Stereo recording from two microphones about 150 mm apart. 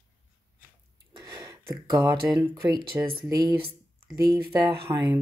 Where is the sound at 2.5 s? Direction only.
30° right (ahead or behind).